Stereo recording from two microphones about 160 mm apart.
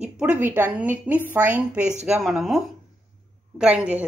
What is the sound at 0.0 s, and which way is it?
A woman's voice, 10° right (ahead or behind).